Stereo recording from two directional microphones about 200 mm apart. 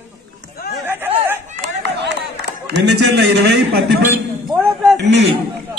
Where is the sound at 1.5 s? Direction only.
60° right (ahead or behind).